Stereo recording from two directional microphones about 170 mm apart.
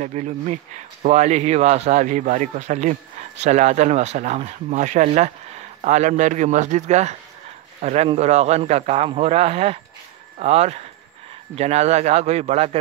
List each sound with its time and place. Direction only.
0.0 s a man's voice: 45° right (ahead or behind)